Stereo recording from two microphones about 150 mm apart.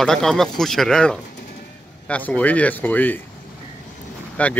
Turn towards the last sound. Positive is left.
turn(degrees=10)  # may be behind; listen again after turning